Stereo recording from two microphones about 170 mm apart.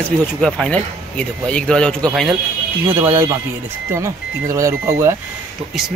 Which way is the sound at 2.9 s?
15° right (ahead or behind).